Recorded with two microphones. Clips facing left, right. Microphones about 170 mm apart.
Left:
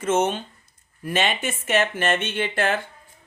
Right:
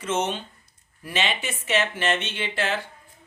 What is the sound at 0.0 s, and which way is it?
Speech, 50° left (ahead or behind).